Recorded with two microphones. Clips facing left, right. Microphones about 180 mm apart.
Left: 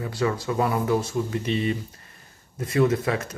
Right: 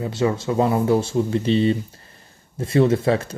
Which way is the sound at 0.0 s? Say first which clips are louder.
Right 4 dB; 25° right (ahead or behind).